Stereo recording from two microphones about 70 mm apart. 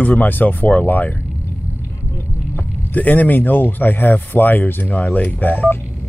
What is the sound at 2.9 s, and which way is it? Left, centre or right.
Speech, left.